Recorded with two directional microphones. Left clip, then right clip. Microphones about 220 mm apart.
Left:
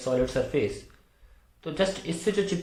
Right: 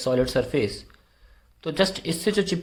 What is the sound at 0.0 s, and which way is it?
Speech, 35° right (ahead or behind).